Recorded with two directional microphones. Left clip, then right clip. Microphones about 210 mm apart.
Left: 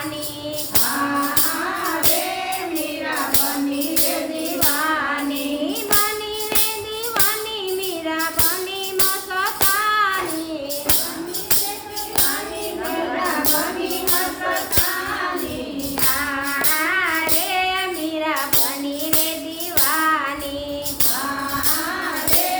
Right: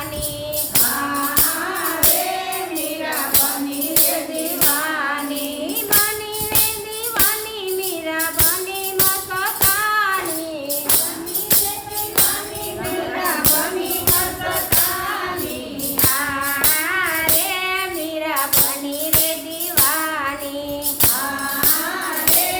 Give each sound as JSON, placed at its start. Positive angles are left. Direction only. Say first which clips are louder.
{"t": 9.4, "sound": "music", "louder": "left 1 dB", "side_deg": 10}